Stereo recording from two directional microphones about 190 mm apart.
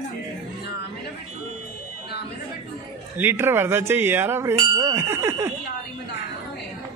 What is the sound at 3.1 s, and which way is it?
Speech, 10° right (ahead or behind).